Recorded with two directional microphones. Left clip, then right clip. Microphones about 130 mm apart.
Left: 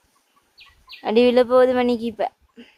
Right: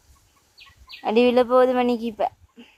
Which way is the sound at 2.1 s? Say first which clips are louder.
Even; 30° left (ahead or behind).